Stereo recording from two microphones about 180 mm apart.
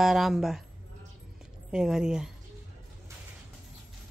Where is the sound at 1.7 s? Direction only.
5° right (ahead or behind).